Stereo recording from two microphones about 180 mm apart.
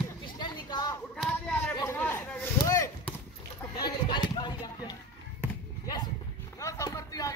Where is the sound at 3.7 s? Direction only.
25° left (ahead or behind).